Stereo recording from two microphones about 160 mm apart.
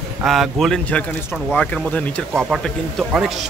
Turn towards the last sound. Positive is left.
turn(degrees=0)  # may be behind; listen again after turning